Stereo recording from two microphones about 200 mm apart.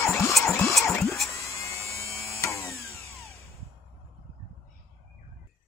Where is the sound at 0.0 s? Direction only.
15° left (ahead or behind).